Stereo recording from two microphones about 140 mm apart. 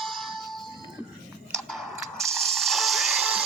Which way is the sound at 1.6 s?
Centre (ahead or behind).